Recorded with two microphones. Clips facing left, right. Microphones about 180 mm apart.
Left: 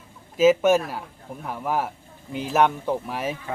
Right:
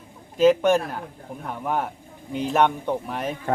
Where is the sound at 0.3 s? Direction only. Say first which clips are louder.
Even; 5° left (ahead or behind).